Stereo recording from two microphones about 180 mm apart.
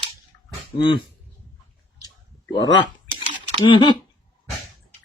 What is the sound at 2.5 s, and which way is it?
Speech, 25° left (ahead or behind).